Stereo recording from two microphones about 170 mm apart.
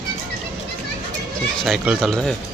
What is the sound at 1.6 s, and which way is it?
Speech, centre (ahead or behind).